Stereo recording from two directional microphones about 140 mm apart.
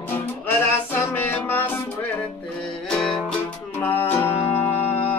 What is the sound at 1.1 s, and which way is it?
Music, 15° left (ahead or behind).